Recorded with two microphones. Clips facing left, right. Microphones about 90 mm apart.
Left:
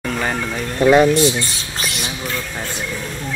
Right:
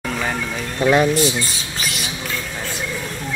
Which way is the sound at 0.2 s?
Centre (ahead or behind).